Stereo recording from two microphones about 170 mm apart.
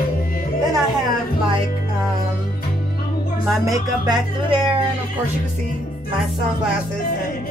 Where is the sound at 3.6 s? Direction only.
25° right (ahead or behind).